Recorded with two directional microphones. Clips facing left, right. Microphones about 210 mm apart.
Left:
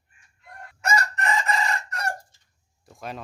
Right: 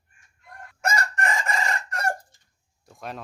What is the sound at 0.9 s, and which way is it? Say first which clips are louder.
Chicken: left 1 dB; 50° right (ahead or behind).